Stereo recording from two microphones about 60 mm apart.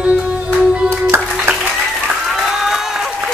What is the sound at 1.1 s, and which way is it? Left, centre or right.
Music, right.